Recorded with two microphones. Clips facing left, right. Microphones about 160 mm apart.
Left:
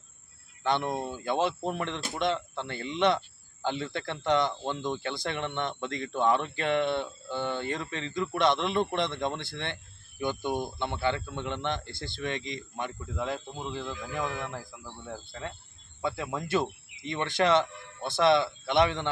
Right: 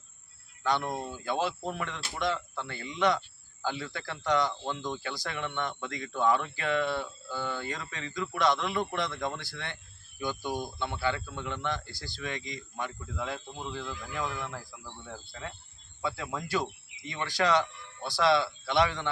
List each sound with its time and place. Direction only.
0.6 s speech: 20° left (ahead or behind)